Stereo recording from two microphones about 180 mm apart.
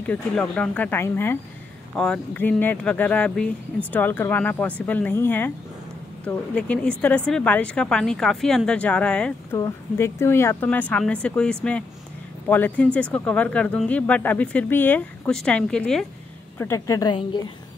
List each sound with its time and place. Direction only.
0.0 s a woman's voice: 10° left (ahead or behind)
9.6 s a woman's voice: 15° left (ahead or behind)
16.5 s a woman's voice: 15° left (ahead or behind)